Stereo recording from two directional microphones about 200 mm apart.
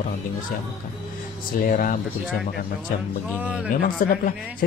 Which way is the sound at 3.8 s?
45° left (ahead or behind).